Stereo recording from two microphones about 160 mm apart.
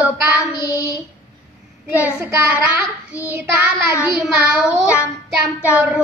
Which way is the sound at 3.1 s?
10° right (ahead or behind).